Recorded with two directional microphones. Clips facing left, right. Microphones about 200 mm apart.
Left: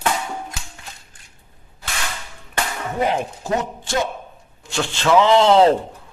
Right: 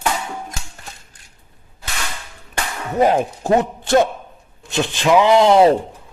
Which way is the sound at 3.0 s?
50° right (ahead or behind).